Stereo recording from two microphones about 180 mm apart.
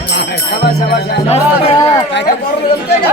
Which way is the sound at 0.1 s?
65° left (ahead or behind).